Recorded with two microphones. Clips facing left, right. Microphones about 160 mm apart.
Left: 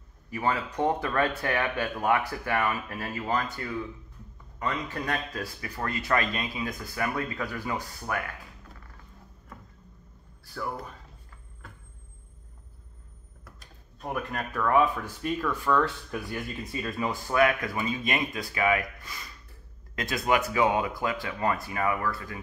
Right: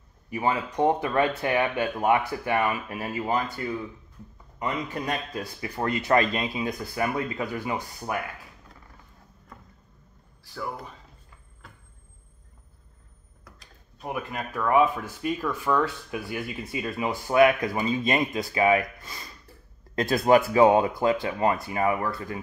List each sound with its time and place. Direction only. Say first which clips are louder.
0.3 s speech: right 2 dB; 20° right (ahead or behind)
13.4 s speech: even; centre (ahead or behind); by 22.4 s 25° right (ahead or behind)